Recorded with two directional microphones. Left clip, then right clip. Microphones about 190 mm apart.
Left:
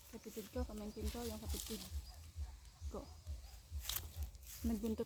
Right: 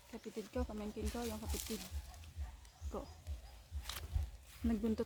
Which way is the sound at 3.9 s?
50° left (ahead or behind).